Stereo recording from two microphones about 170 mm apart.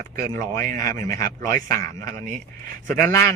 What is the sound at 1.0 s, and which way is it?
Speech, 20° left (ahead or behind).